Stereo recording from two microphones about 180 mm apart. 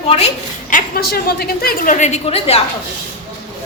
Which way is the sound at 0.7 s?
60° left (ahead or behind).